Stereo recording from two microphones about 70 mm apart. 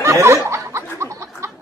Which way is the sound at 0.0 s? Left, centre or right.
Right.